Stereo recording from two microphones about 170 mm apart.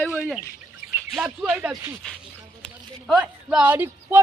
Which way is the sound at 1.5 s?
10° right (ahead or behind).